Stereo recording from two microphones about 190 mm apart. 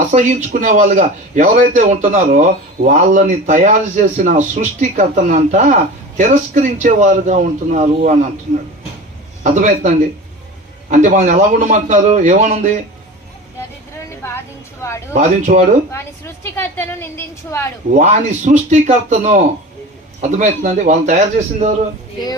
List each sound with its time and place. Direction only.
0.0 s a man's voice: 40° right (ahead or behind)
9.4 s a man's voice: 40° right (ahead or behind)
14.2 s a sound: 10° left (ahead or behind)
15.1 s a man's voice: 40° right (ahead or behind)
15.9 s a woman's voice: 15° left (ahead or behind)
17.9 s a man's voice: 40° right (ahead or behind)